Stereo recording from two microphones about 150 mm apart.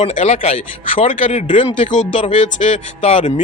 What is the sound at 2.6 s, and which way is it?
Speech, 45° left (ahead or behind).